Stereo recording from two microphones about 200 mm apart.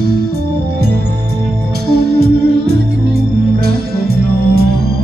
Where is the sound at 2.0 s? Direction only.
50° right (ahead or behind).